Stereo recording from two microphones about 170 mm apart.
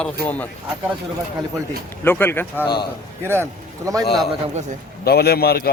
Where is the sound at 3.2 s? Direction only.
15° right (ahead or behind).